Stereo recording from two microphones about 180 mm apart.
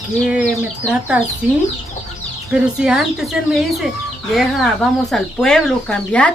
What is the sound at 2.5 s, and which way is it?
Speech, 5° right (ahead or behind).